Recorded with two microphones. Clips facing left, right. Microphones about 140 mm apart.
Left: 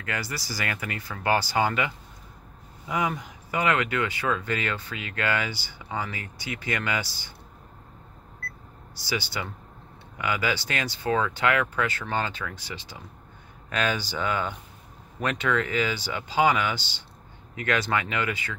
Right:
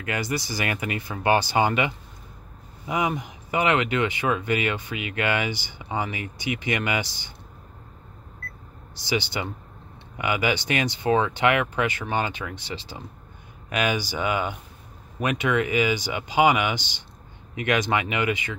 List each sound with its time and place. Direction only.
0.0 s speech: 20° right (ahead or behind)
8.9 s speech: 20° right (ahead or behind)
13.7 s speech: 15° right (ahead or behind)